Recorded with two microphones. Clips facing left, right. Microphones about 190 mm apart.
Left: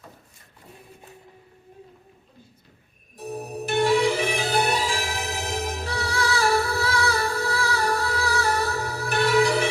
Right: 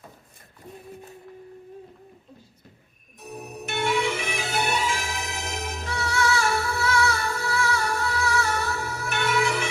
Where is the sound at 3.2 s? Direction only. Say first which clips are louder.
Left 6 dB; 35° left (ahead or behind).